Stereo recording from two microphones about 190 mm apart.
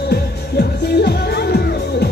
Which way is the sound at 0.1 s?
55° left (ahead or behind).